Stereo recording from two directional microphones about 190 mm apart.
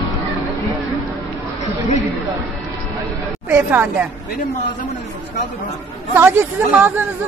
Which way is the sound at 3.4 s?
10° right (ahead or behind).